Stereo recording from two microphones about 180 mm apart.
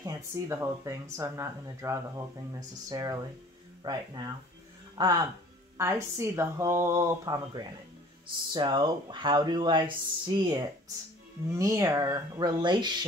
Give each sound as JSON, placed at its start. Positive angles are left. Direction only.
{"t": 0.0, "sound": "speech", "side_deg": -15}